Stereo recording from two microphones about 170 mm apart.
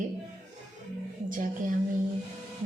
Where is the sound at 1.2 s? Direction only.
50° right (ahead or behind).